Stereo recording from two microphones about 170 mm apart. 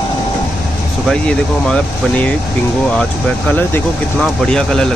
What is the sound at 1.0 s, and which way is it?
Speech, 5° left (ahead or behind).